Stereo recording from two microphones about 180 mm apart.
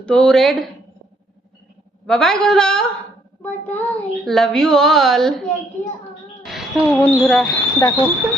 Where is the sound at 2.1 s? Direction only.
5° left (ahead or behind).